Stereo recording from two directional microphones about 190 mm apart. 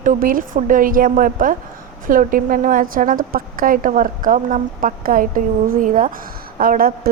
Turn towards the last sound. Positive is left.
turn(degrees=-50)  # may be behind; listen again after turning